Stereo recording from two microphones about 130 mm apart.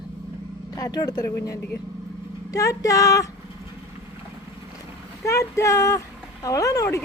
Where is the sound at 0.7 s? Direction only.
30° left (ahead or behind).